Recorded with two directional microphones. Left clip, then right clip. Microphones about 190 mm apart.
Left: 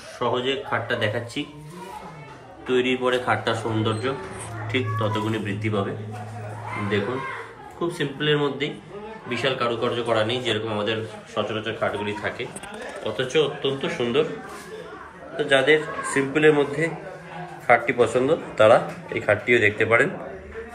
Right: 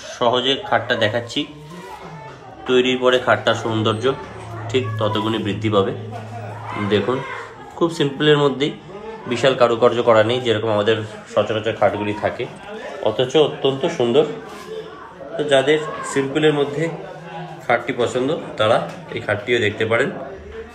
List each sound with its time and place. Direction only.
0.2 s speech: 10° right (ahead or behind)
2.6 s speech: 5° right (ahead or behind)
7.8 s a man's voice: 15° right (ahead or behind)
15.5 s speech: 5° right (ahead or behind)